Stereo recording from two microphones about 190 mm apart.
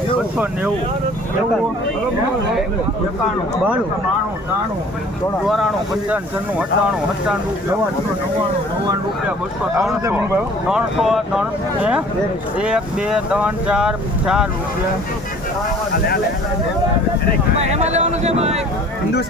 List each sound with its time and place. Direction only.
6.6 s speech: 5° right (ahead or behind)
10.7 s speech: 5° right (ahead or behind)
15.9 s speech: 55° left (ahead or behind)
17.6 s speech: 35° right (ahead or behind)